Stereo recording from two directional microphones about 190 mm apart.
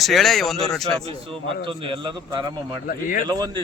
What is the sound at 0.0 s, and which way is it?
Speech, centre (ahead or behind).